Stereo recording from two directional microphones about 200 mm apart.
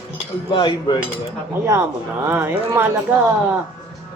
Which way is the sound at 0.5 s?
25° left (ahead or behind).